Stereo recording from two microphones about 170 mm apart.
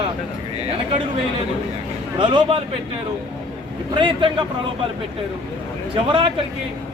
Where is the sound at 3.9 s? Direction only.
30° right (ahead or behind).